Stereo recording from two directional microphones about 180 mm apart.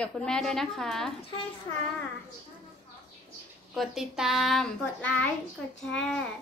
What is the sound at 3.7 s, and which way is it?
A child's voice, centre (ahead or behind).